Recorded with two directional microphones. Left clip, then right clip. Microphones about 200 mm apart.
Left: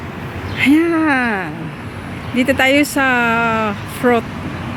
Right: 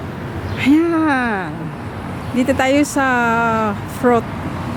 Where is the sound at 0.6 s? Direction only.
5° left (ahead or behind).